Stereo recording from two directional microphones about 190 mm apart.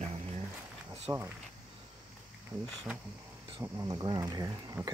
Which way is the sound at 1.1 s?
15° right (ahead or behind).